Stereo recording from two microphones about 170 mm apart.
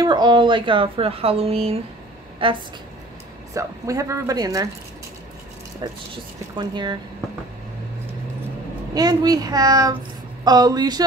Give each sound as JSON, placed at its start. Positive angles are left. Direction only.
{"t": 0.0, "sound": "speech", "side_deg": -25}
{"t": 3.5, "sound": "a woman's voice", "side_deg": -20}
{"t": 6.5, "sound": "a woman's voice", "side_deg": -25}
{"t": 8.9, "sound": "a woman's voice", "side_deg": -20}